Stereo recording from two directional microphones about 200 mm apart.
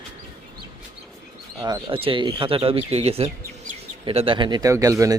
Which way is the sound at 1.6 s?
25° right (ahead or behind).